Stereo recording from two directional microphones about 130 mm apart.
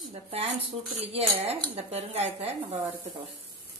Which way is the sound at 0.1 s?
50° right (ahead or behind).